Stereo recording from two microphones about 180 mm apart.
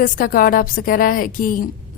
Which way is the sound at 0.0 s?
50° left (ahead or behind).